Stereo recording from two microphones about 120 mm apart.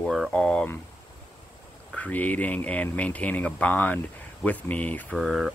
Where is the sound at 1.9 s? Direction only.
10° left (ahead or behind).